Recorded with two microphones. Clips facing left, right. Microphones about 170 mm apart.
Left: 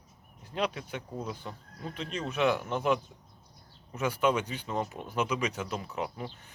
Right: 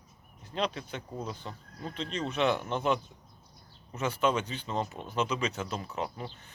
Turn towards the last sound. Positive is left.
turn(degrees=10)  # may be behind; listen again after turning